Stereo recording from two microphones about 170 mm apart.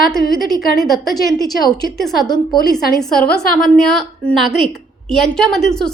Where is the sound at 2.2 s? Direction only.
25° left (ahead or behind).